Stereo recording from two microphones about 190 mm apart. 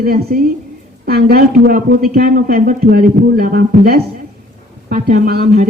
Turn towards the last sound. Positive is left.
turn(degrees=-50)  # may be behind; listen again after turning